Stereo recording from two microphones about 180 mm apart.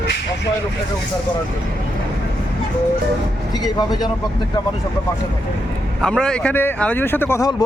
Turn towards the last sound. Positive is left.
turn(degrees=15)  # may be behind; listen again after turning